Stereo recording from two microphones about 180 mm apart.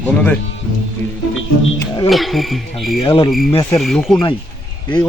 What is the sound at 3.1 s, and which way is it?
Speech, 25° left (ahead or behind).